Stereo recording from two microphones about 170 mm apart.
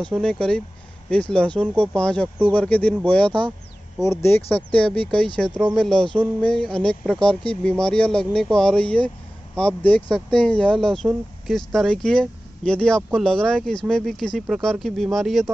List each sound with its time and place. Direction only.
0.0 s speech: 5° left (ahead or behind)